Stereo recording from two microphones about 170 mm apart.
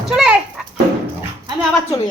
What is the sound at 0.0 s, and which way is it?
Children playing, 5° right (ahead or behind).